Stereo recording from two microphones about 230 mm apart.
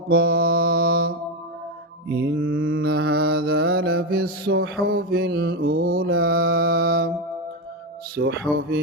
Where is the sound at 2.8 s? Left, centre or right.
Right.